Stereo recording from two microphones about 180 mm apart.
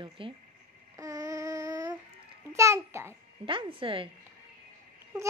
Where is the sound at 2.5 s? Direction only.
15° right (ahead or behind).